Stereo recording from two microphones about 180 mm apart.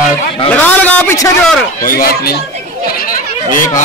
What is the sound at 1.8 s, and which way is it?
Speech, 55° left (ahead or behind).